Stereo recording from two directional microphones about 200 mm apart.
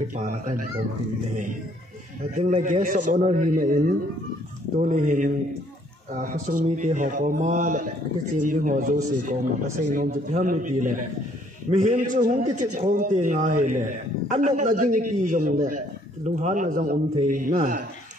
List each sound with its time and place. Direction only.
0.2 s a man's voice: 40° right (ahead or behind)
2.5 s a man's voice: 40° right (ahead or behind)